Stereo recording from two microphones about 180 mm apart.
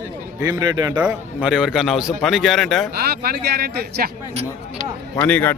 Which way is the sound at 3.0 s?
60° right (ahead or behind).